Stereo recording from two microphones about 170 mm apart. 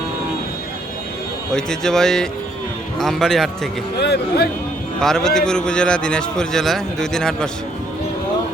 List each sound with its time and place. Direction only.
1.5 s a man's voice: 5° left (ahead or behind)
3.9 s speech: 75° left (ahead or behind)
4.9 s a man's voice: 5° left (ahead or behind)